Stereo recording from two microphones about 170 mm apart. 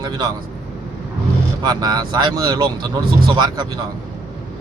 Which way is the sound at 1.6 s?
25° right (ahead or behind).